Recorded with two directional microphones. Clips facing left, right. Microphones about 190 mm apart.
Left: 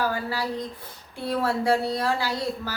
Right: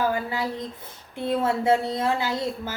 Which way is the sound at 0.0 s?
20° right (ahead or behind).